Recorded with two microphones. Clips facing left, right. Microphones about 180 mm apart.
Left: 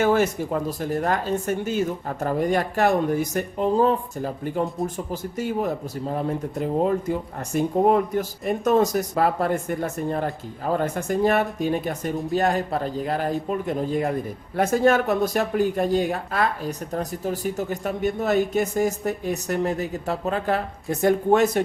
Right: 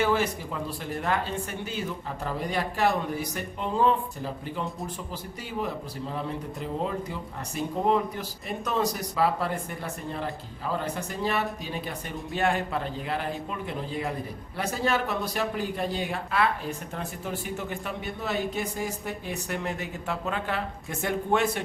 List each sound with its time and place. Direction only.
0.0 s speech: 45° left (ahead or behind)